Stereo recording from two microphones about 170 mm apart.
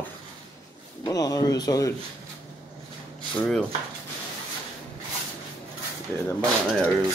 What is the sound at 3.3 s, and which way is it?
Speech, 5° left (ahead or behind).